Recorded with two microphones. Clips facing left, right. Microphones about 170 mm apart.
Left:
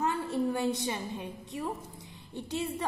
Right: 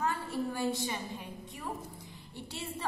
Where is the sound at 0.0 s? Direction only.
20° left (ahead or behind).